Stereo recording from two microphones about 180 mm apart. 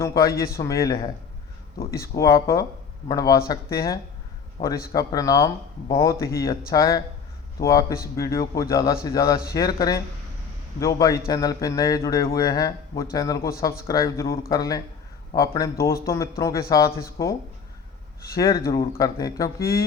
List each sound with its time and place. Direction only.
0.0 s a man's voice: 15° left (ahead or behind)